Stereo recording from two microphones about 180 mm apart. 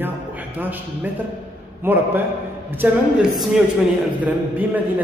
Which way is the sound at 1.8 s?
10° right (ahead or behind).